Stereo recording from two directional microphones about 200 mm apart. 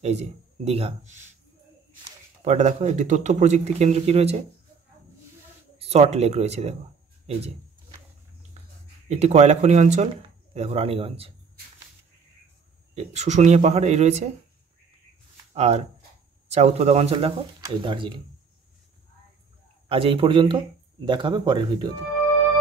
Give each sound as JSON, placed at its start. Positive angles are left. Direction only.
{"t": 0.0, "sound": "speech", "side_deg": -35}
{"t": 2.4, "sound": "speech", "side_deg": -35}
{"t": 5.8, "sound": "speech", "side_deg": -30}
{"t": 8.6, "sound": "a sound", "side_deg": -35}
{"t": 9.1, "sound": "a man's voice", "side_deg": -35}
{"t": 12.9, "sound": "speech", "side_deg": -35}
{"t": 15.5, "sound": "a man's voice", "side_deg": -35}
{"t": 19.9, "sound": "a man's voice", "side_deg": -25}